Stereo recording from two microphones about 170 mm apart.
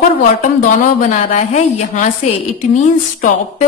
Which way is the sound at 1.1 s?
40° left (ahead or behind).